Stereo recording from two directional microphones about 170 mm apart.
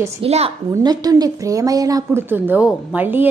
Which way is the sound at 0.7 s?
25° right (ahead or behind).